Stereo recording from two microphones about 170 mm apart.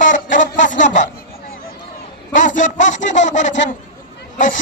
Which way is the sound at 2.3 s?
45° left (ahead or behind).